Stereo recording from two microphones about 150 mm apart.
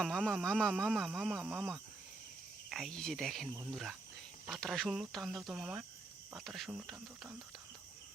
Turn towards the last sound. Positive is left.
turn(degrees=-5)  # may be behind; listen again after turning